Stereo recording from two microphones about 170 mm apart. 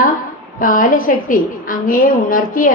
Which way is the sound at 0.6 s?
50° left (ahead or behind).